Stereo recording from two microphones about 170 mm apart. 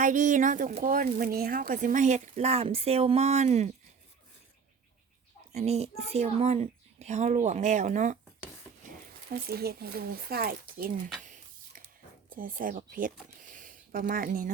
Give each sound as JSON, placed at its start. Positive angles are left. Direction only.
{"t": 0.0, "sound": "speech", "side_deg": -50}
{"t": 5.5, "sound": "speech", "side_deg": -40}
{"t": 9.3, "sound": "speech", "side_deg": -65}
{"t": 11.2, "sound": "a sound", "side_deg": -50}
{"t": 12.3, "sound": "speech", "side_deg": -55}